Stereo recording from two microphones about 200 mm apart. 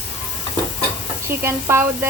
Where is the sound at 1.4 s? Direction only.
10° right (ahead or behind).